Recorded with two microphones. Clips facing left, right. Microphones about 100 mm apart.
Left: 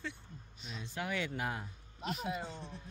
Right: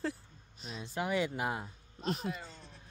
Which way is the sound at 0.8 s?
15° right (ahead or behind).